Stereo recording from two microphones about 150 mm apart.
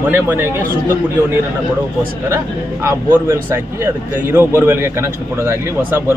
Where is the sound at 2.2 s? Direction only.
20° right (ahead or behind).